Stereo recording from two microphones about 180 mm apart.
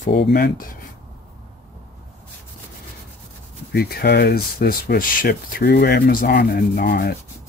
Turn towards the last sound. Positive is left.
turn(degrees=60)  # may be behind; listen again after turning